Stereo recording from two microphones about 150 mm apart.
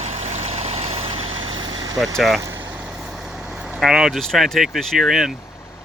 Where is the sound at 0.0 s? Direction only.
50° right (ahead or behind); by 2.0 s 30° right (ahead or behind).